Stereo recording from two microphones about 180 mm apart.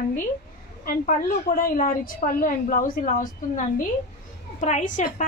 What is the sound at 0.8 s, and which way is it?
A woman's voice, 50° left (ahead or behind).